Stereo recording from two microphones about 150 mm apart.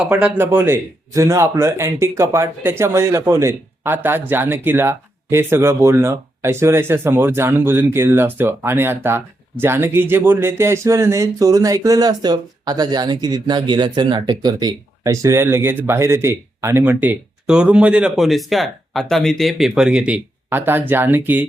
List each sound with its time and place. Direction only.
0.0 s speech: 5° right (ahead or behind)